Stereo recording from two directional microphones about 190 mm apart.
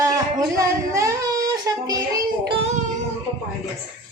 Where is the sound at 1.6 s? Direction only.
20° right (ahead or behind).